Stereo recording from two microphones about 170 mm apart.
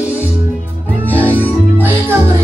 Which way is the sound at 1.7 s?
10° right (ahead or behind).